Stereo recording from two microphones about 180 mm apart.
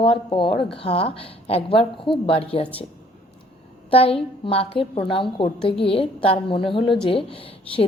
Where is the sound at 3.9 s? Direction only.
30° left (ahead or behind).